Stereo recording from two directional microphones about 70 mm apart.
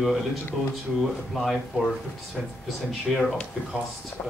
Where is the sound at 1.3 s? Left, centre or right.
Centre.